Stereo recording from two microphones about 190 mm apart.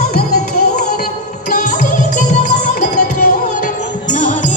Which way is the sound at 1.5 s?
40° left (ahead or behind).